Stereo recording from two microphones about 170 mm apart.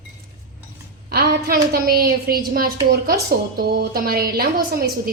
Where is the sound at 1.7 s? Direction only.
60° right (ahead or behind).